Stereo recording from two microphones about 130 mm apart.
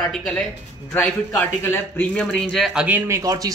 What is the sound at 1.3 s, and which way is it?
Speech, 15° left (ahead or behind).